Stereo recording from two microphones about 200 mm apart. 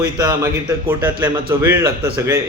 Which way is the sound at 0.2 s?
20° right (ahead or behind).